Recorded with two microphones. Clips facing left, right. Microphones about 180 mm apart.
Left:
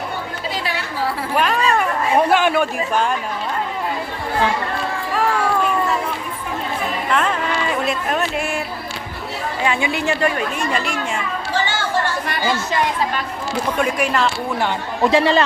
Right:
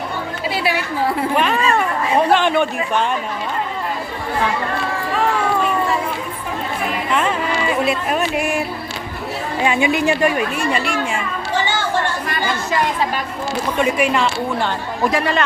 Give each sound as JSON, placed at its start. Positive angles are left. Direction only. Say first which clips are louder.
{"t": 0.5, "sound": "chatter", "louder": "right 6 dB", "side_deg": -10}
{"t": 1.4, "sound": "a sound", "louder": "left 2 dB", "side_deg": 0}
{"t": 2.3, "sound": "speech", "louder": "right 1 dB", "side_deg": 5}
{"t": 7.1, "sound": "chatter", "louder": "even", "side_deg": -5}
{"t": 7.9, "sound": "speech", "louder": "right 2 dB", "side_deg": -10}
{"t": 9.6, "sound": "speech", "louder": "right 4 dB", "side_deg": -20}
{"t": 13.7, "sound": "speech", "louder": "right 3 dB", "side_deg": -5}
{"t": 15.0, "sound": "speech", "louder": "left 4 dB", "side_deg": 30}